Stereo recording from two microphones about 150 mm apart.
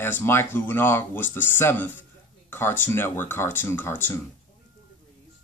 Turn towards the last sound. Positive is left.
turn(degrees=15)  # may be behind; listen again after turning